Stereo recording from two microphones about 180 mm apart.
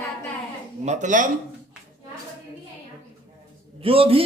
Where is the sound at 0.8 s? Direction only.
40° right (ahead or behind).